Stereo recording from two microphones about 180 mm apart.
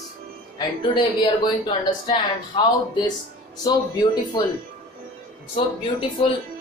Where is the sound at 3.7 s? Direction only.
20° left (ahead or behind).